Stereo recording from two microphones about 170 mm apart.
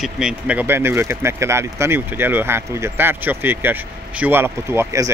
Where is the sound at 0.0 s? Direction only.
5° right (ahead or behind).